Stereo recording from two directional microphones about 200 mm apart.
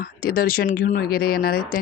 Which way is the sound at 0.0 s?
50° left (ahead or behind).